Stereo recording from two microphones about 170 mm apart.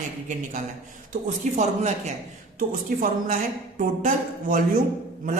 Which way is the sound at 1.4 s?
45° right (ahead or behind).